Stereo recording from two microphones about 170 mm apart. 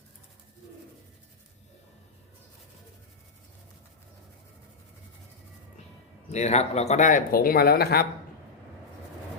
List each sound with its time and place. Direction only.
6.3 s speech: 40° left (ahead or behind); by 8.0 s 65° left (ahead or behind)